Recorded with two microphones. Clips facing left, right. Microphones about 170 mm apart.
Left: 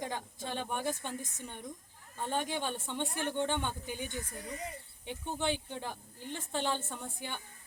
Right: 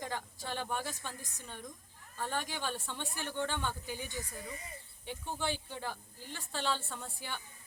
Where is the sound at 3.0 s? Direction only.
60° left (ahead or behind).